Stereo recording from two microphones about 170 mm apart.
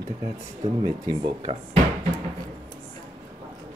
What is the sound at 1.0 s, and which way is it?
Speech, 30° right (ahead or behind).